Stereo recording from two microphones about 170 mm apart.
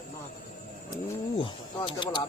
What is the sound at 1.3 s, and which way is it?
Speech, 30° left (ahead or behind).